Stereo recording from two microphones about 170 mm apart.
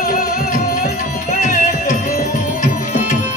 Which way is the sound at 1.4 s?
50° left (ahead or behind).